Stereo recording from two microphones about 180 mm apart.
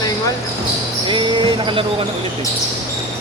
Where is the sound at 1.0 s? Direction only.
25° right (ahead or behind).